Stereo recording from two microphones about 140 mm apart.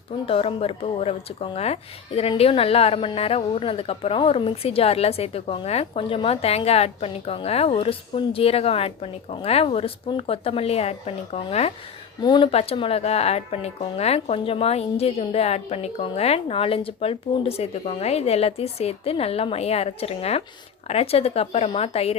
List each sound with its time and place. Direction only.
0.3 s speech: 45° left (ahead or behind)
12.2 s speech: 35° left (ahead or behind)
12.5 s speech: 45° left (ahead or behind)